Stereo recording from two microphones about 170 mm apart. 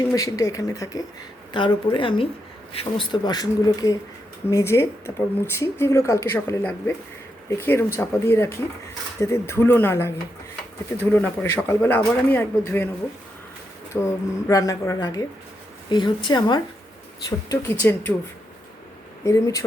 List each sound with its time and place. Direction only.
0.1 s speech: 20° left (ahead or behind)
13.9 s speech: 15° left (ahead or behind)
19.2 s speech: 20° left (ahead or behind)